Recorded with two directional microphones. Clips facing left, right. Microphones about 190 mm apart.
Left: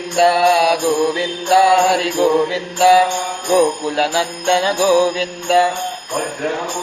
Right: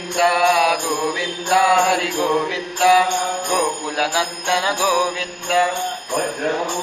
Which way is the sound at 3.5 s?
25° left (ahead or behind).